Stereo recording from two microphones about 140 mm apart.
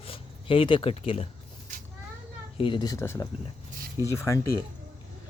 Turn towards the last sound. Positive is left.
turn(degrees=20)  # may be behind; listen again after turning